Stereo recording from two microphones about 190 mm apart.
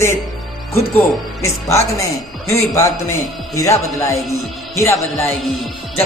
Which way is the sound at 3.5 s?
15° left (ahead or behind).